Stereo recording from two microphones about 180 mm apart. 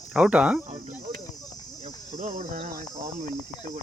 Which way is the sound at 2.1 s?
45° right (ahead or behind).